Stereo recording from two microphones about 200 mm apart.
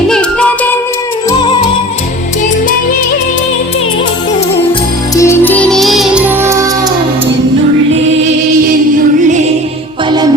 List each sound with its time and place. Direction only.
0.1 s music: 5° left (ahead or behind)
1.3 s music: 25° left (ahead or behind)
5.1 s music: 15° left (ahead or behind); by 6.7 s 15° right (ahead or behind)